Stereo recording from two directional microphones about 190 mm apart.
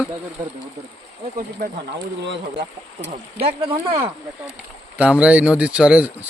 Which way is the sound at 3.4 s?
30° right (ahead or behind).